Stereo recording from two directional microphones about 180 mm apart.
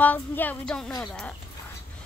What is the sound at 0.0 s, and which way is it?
Speech, 10° left (ahead or behind).